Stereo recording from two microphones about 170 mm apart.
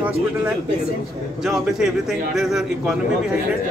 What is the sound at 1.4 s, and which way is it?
A man's voice, 5° right (ahead or behind).